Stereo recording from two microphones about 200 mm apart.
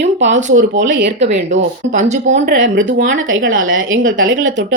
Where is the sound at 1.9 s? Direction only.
40° right (ahead or behind).